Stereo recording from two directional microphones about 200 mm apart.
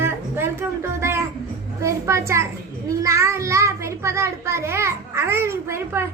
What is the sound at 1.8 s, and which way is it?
A child's voice, 15° right (ahead or behind).